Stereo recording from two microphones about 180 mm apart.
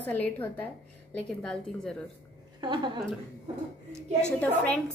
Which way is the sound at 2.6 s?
25° right (ahead or behind).